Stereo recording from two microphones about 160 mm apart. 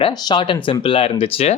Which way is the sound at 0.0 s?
30° left (ahead or behind).